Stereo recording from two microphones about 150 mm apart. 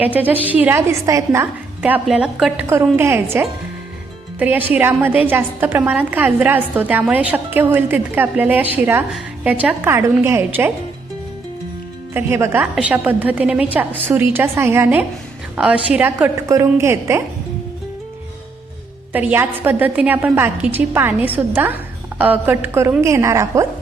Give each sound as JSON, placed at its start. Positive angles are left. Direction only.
{"t": 0.0, "sound": "a woman's voice", "side_deg": -10}
{"t": 1.8, "sound": "a woman's voice", "side_deg": -10}
{"t": 2.6, "sound": "a woman's voice", "side_deg": -15}
{"t": 12.1, "sound": "a woman's voice", "side_deg": -15}
{"t": 19.1, "sound": "a woman's voice", "side_deg": -10}